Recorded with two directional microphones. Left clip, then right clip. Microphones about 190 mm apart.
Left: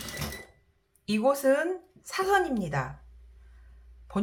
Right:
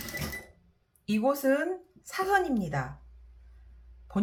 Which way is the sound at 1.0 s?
15° left (ahead or behind).